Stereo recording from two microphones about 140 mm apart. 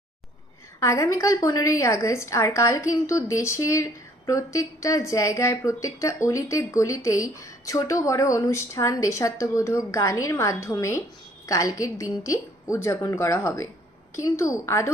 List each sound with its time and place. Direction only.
0.8 s a woman's voice: 20° left (ahead or behind)